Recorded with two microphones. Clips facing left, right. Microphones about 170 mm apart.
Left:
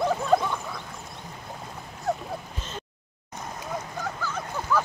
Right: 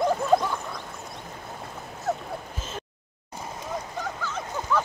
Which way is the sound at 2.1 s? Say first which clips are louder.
Even; centre (ahead or behind).